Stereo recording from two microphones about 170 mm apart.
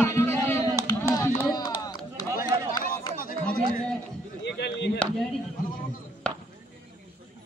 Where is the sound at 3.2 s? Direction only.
55° left (ahead or behind).